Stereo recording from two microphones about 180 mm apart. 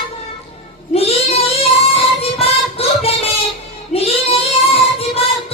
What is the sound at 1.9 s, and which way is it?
Music, 35° left (ahead or behind).